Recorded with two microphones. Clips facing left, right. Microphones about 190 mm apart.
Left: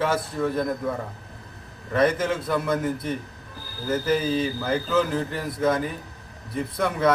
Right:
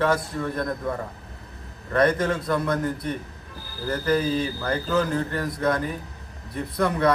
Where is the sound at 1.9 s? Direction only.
5° left (ahead or behind).